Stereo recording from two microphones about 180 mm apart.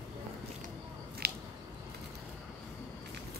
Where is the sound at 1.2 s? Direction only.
60° right (ahead or behind).